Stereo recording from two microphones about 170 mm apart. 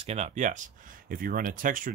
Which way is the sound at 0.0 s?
40° right (ahead or behind).